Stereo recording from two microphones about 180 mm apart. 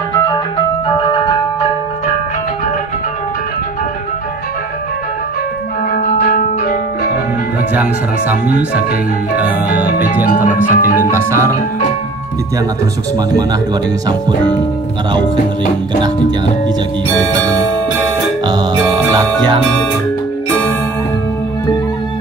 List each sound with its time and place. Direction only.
0.8 s music: 30° left (ahead or behind)
5.9 s music: 50° left (ahead or behind)
7.7 s speech: 10° right (ahead or behind)
10.2 s music: 50° left (ahead or behind)
11.1 s speech: 15° right (ahead or behind)
18.4 s music: 25° right (ahead or behind)